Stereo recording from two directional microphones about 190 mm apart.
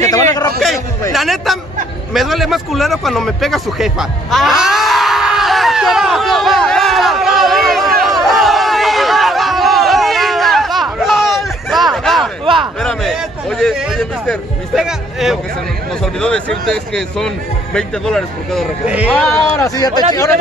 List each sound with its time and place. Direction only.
0.0 s a sound: 20° left (ahead or behind)
1.1 s a man's voice: centre (ahead or behind)
2.1 s a sound: centre (ahead or behind)
12.8 s a man's voice: centre (ahead or behind)
19.1 s a man's voice: 5° left (ahead or behind)
19.6 s speech: 20° left (ahead or behind)